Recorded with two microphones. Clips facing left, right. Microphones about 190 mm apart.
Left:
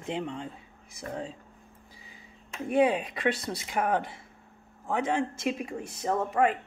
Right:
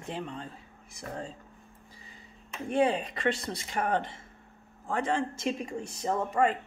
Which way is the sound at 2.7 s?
5° left (ahead or behind).